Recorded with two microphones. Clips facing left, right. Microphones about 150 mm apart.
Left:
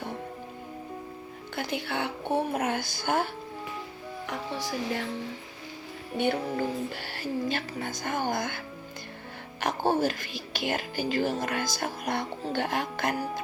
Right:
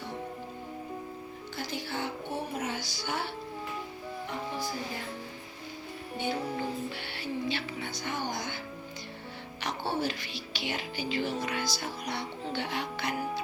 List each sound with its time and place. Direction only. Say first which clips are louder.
1.5 s speech: left 5 dB; 60° left (ahead or behind)
4.3 s speech: left 3 dB; 80° left
6.9 s speech: left 3 dB; 45° left (ahead or behind)